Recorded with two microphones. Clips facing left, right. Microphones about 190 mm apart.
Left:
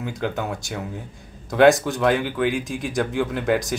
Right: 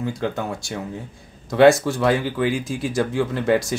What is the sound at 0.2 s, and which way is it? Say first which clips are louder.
Speech: right 1 dB; 5° left (ahead or behind).